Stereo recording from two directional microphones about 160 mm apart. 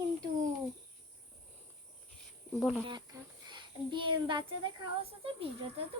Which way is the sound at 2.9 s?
25° right (ahead or behind).